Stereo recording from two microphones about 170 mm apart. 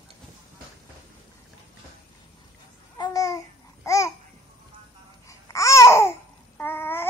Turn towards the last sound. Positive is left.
turn(degrees=15)  # may be behind; listen again after turning